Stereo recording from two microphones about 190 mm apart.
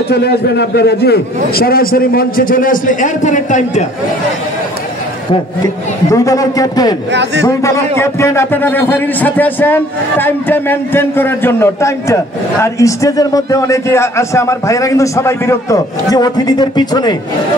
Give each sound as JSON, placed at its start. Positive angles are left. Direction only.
{"t": 0.1, "sound": "a man's voice", "side_deg": 60}
{"t": 6.0, "sound": "a man's voice", "side_deg": 15}
{"t": 7.1, "sound": "a man's voice", "side_deg": -65}
{"t": 7.4, "sound": "a man's voice", "side_deg": 15}